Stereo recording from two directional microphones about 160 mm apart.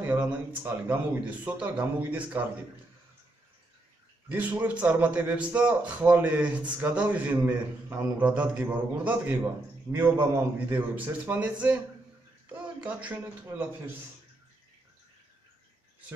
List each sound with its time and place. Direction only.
0.0 s a man's voice: 10° right (ahead or behind)
4.3 s a man's voice: 10° right (ahead or behind)
12.5 s a man's voice: 10° right (ahead or behind)